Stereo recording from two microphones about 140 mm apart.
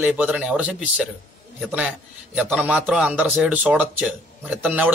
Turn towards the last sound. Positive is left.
turn(degrees=-10)  # may be behind; listen again after turning